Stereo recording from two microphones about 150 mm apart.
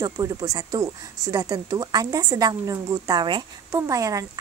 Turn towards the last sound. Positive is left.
turn(degrees=-20)  # may be behind; listen again after turning